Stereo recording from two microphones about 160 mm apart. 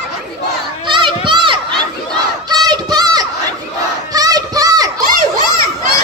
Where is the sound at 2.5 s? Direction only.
25° right (ahead or behind).